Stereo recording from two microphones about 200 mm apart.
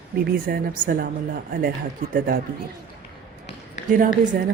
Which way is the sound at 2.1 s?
45° right (ahead or behind).